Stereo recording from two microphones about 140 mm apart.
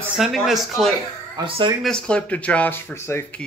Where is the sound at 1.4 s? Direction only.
35° right (ahead or behind).